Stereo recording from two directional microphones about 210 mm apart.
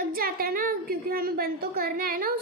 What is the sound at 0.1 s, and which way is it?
A woman's voice, 45° right (ahead or behind).